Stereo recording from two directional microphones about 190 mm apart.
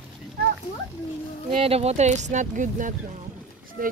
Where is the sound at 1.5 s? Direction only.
30° right (ahead or behind).